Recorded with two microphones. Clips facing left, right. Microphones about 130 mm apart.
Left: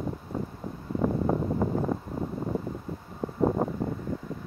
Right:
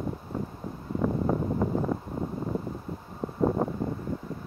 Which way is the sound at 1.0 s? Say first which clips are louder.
Left 1 dB; 10° left (ahead or behind).